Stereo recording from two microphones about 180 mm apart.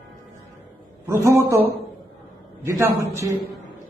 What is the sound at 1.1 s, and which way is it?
Speech, 15° right (ahead or behind).